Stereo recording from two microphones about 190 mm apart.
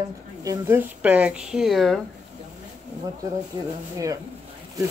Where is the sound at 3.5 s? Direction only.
20° right (ahead or behind).